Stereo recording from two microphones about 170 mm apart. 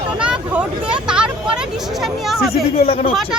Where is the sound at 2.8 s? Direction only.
35° left (ahead or behind).